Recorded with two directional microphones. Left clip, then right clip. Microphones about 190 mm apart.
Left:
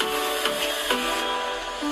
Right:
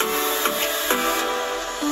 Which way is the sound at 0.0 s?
35° right (ahead or behind).